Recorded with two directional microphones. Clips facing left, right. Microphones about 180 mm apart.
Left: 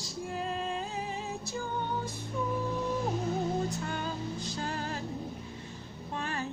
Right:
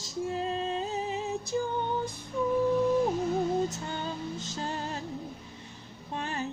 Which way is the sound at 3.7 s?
20° right (ahead or behind).